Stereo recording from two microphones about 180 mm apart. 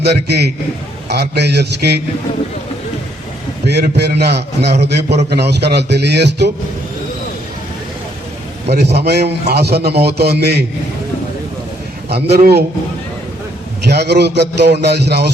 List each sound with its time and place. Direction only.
0.0 s speech: 65° right (ahead or behind)
3.7 s speech: 70° right (ahead or behind)
8.7 s a man's voice: 65° right (ahead or behind)
12.0 s a man's voice: 65° right (ahead or behind)
13.8 s speech: 70° right (ahead or behind)